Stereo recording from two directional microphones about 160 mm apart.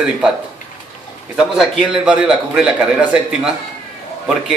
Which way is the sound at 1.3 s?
5° right (ahead or behind).